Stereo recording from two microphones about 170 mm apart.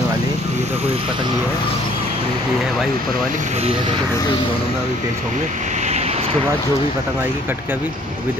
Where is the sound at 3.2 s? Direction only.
45° right (ahead or behind).